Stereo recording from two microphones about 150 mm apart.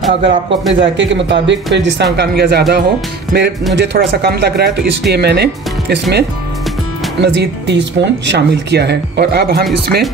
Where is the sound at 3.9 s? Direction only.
90° right.